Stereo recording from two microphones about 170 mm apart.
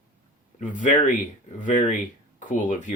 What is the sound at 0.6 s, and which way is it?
Speech, 50° left (ahead or behind).